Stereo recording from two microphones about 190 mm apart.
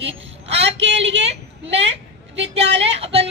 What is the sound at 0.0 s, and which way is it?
A woman's voice, 30° right (ahead or behind).